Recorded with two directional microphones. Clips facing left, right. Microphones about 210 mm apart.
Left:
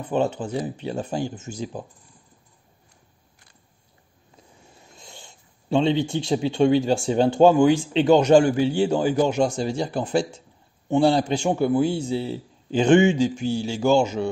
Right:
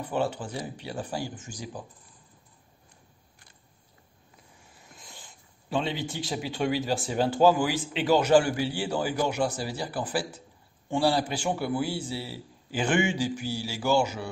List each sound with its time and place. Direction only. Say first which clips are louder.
0.1 s a man's voice: left 7 dB; 20° left (ahead or behind)
4.7 s a sound: left 4 dB; 25° left (ahead or behind)
6.1 s a man's voice: left 10 dB; 25° left (ahead or behind)